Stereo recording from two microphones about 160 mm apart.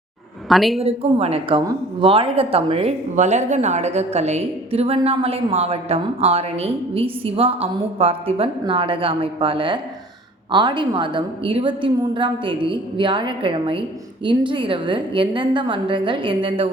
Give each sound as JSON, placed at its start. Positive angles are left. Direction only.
{"t": 0.4, "sound": "a woman's voice", "side_deg": 0}
{"t": 0.8, "sound": "a woman's voice", "side_deg": -40}